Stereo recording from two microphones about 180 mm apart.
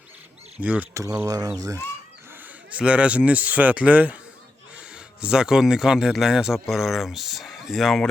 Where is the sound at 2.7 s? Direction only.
5° right (ahead or behind).